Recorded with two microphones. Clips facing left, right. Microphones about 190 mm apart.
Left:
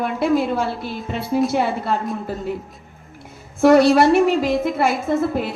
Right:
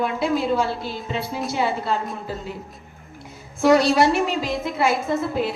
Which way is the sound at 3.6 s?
55° left (ahead or behind).